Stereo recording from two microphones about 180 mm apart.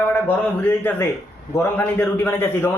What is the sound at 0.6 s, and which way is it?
A man's voice, 10° left (ahead or behind).